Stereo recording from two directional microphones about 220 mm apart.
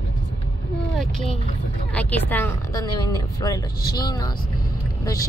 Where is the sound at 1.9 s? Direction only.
5° left (ahead or behind).